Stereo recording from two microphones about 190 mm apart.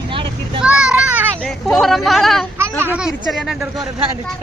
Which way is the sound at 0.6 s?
5° right (ahead or behind).